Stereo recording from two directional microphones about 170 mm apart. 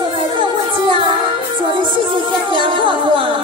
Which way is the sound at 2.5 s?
30° right (ahead or behind).